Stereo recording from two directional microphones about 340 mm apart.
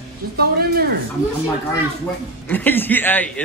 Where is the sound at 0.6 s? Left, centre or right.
Right.